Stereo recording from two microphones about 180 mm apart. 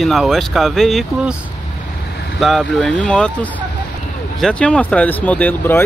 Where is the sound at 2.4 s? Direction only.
Centre (ahead or behind).